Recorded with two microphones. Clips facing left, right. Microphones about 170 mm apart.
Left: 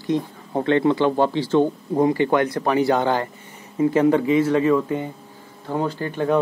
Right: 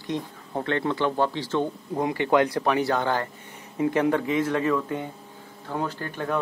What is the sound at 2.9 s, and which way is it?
Speech, 20° left (ahead or behind).